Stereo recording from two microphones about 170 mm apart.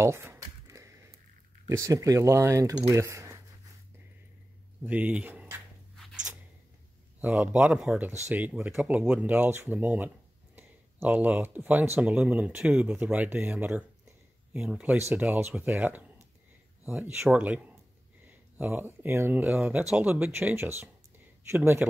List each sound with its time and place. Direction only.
0.0 s a sound: 15° right (ahead or behind)
1.7 s speech: 20° right (ahead or behind)
4.8 s speech: 10° right (ahead or behind)
7.2 s speech: 10° right (ahead or behind)